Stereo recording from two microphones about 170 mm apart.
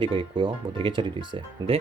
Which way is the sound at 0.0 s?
30° right (ahead or behind).